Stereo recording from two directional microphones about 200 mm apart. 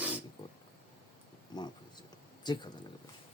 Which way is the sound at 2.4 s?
20° left (ahead or behind).